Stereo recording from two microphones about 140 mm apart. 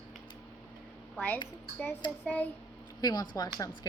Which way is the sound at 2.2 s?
10° left (ahead or behind).